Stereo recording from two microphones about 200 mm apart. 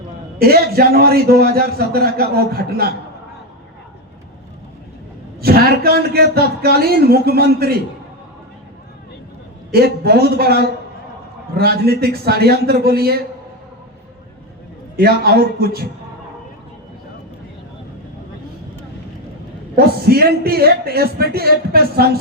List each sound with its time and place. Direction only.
0.3 s a man's voice: 50° right (ahead or behind)
5.4 s a man's voice: 50° right (ahead or behind)
9.7 s a man's voice: 50° right (ahead or behind)
14.9 s a man's voice: 50° right (ahead or behind)
19.7 s a man's voice: 50° right (ahead or behind)